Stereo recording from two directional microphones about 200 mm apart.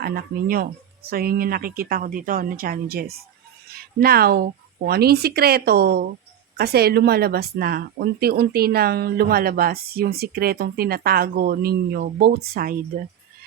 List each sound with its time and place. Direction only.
0.0 s speech: 50° right (ahead or behind)